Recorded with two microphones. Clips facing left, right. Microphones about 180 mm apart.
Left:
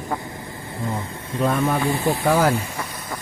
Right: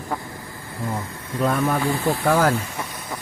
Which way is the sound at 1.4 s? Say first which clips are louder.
Left 1 dB; 10° left (ahead or behind).